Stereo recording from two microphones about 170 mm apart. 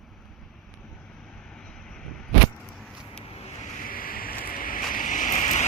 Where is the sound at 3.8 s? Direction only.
55° left (ahead or behind).